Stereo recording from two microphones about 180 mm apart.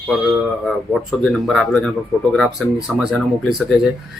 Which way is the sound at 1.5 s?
Centre (ahead or behind).